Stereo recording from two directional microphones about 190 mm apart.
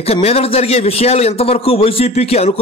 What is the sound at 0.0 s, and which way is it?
A man's voice, 30° left (ahead or behind).